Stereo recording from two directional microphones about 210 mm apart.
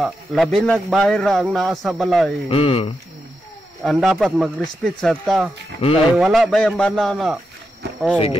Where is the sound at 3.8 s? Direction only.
Centre (ahead or behind).